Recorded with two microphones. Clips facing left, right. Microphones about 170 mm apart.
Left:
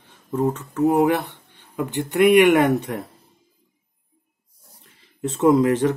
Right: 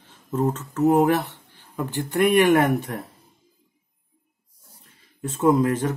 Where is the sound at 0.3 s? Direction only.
10° left (ahead or behind).